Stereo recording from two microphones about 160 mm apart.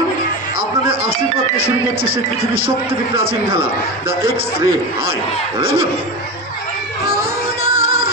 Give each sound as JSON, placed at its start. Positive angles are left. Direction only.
{"t": 4.3, "sound": "a man's voice", "side_deg": -35}
{"t": 7.6, "sound": "music", "side_deg": -35}